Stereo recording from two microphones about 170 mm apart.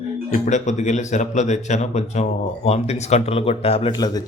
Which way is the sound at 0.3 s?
45° left (ahead or behind).